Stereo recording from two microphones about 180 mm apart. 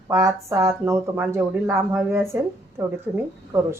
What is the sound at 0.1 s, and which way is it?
Speech, 15° right (ahead or behind).